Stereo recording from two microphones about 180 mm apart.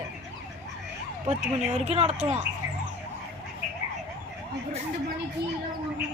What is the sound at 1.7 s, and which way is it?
Speech, 35° right (ahead or behind).